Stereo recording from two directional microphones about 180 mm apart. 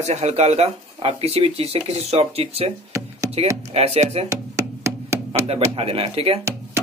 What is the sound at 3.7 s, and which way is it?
Speech, 35° right (ahead or behind).